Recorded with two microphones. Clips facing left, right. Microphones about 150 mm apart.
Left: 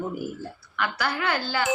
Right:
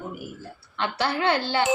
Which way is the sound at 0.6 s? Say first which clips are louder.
Right 2 dB; 30° right (ahead or behind).